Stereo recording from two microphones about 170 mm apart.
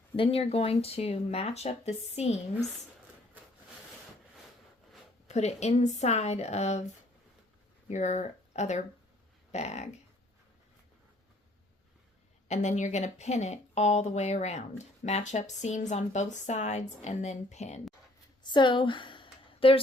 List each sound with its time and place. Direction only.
0.2 s speech: 35° left (ahead or behind)
5.3 s speech: 40° left (ahead or behind)
7.9 s speech: 45° left (ahead or behind)
12.5 s speech: 45° left (ahead or behind)
18.4 s a sound: 25° left (ahead or behind)